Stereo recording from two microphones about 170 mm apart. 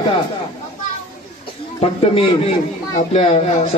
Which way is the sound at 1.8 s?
35° left (ahead or behind).